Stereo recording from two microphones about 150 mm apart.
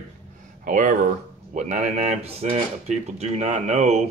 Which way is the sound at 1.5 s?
50° right (ahead or behind).